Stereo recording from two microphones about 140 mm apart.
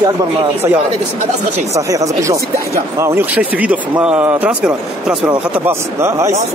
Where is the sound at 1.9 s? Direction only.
25° right (ahead or behind).